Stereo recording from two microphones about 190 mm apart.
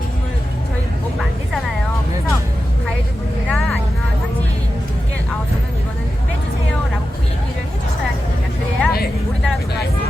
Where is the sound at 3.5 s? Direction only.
5° left (ahead or behind).